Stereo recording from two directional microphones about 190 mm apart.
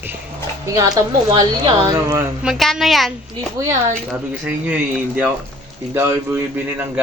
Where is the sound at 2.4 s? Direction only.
Centre (ahead or behind).